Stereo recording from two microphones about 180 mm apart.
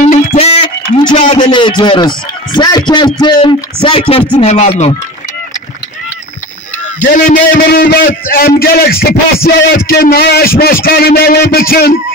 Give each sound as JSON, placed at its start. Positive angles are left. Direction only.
{"t": 0.1, "sound": "a sound", "side_deg": 40}
{"t": 1.1, "sound": "a man's voice", "side_deg": 40}
{"t": 1.4, "sound": "a man's voice", "side_deg": 25}
{"t": 7.0, "sound": "a man's voice", "side_deg": 50}